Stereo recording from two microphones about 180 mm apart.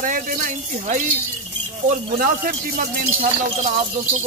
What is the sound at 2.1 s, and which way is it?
Speech, 50° right (ahead or behind).